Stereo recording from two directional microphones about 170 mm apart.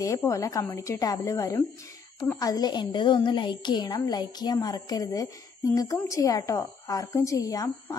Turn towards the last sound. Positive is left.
turn(degrees=20)  # may be behind; listen again after turning